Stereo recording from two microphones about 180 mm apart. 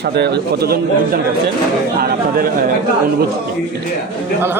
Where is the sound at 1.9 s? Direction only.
55° right (ahead or behind).